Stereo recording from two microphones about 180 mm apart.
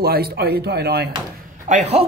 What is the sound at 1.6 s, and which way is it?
Speech, 45° right (ahead or behind).